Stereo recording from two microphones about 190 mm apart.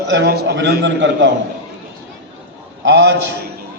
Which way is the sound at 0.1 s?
65° right (ahead or behind).